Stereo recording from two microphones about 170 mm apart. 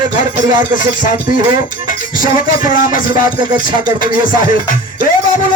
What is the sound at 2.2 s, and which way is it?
Music, 55° left (ahead or behind).